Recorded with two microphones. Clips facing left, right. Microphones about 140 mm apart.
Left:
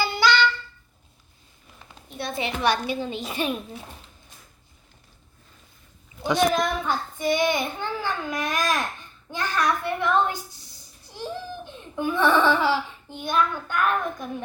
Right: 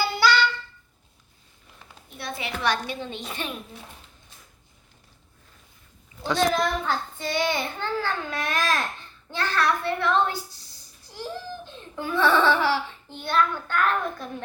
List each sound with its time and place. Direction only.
0.0 s a sound: 5° right (ahead or behind)
2.0 s a child's voice: 25° left (ahead or behind); by 3.4 s 5° left (ahead or behind)
6.2 s a child's voice: 15° left (ahead or behind)